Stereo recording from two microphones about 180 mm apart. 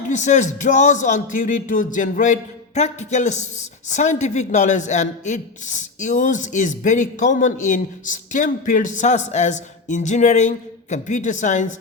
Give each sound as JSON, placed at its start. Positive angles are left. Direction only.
{"t": 0.1, "sound": "speech", "side_deg": 40}